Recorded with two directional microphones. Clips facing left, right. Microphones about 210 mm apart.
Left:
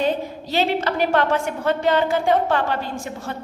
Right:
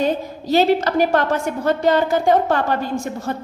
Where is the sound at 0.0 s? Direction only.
40° right (ahead or behind).